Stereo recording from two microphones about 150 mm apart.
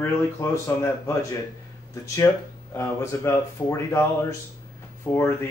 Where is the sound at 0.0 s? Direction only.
15° left (ahead or behind).